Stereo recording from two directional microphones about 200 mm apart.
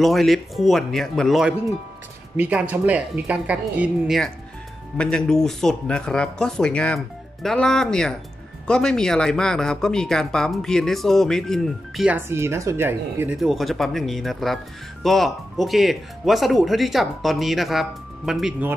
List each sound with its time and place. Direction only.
0.0 s a woman's voice: centre (ahead or behind)
13.4 s speech: centre (ahead or behind)